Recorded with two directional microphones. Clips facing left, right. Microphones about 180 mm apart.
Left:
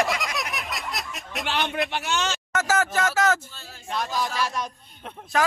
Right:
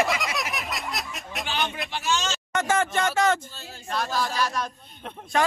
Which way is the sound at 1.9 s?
60° left (ahead or behind).